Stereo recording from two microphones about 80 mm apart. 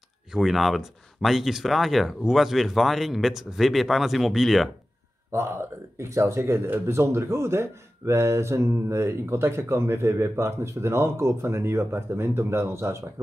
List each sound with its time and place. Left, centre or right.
0.3 s speech: centre
5.3 s speech: right